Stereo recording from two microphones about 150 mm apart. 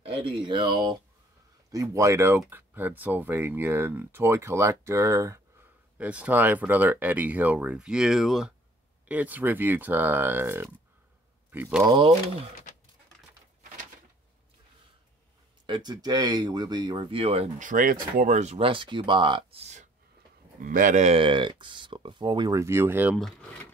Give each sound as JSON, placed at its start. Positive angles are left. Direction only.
{"t": 0.0, "sound": "speech", "side_deg": -35}
{"t": 1.7, "sound": "speech", "side_deg": -20}
{"t": 5.9, "sound": "speech", "side_deg": -10}
{"t": 11.8, "sound": "speech", "side_deg": -35}
{"t": 15.6, "sound": "speech", "side_deg": -30}
{"t": 17.6, "sound": "speech", "side_deg": -60}
{"t": 20.5, "sound": "speech", "side_deg": -60}
{"t": 23.1, "sound": "speech", "side_deg": 5}